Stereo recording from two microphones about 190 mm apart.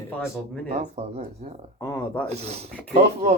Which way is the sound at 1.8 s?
15° left (ahead or behind).